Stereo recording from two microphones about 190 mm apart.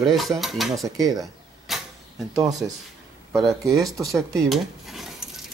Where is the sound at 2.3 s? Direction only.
20° right (ahead or behind).